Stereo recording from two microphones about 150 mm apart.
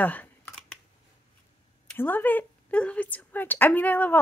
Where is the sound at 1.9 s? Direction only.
10° left (ahead or behind).